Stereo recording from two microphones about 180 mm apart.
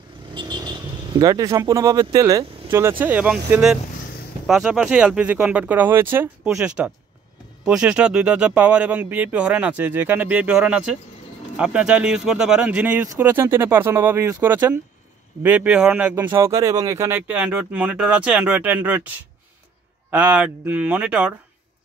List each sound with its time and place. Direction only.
0.3 s speech: 25° right (ahead or behind); by 16.2 s 5° right (ahead or behind)
16.2 s speech: 15° right (ahead or behind)